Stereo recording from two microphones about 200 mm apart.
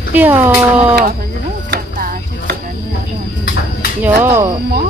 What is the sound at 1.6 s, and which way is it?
Music, 50° right (ahead or behind).